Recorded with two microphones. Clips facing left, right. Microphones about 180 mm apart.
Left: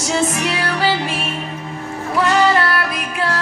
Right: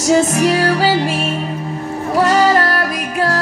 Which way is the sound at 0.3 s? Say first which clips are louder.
Right 7 dB; 40° right (ahead or behind).